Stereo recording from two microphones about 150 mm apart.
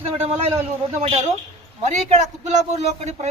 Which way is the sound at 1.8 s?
50° right (ahead or behind).